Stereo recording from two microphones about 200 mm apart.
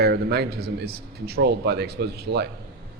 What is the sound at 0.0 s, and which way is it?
Speech, 50° right (ahead or behind).